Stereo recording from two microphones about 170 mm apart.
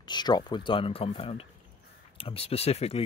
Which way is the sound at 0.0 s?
25° left (ahead or behind).